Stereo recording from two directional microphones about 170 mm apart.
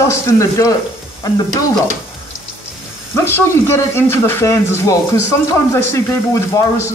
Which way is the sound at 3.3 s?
15° left (ahead or behind).